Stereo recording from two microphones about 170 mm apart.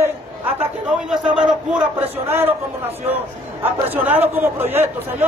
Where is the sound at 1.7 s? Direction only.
10° right (ahead or behind).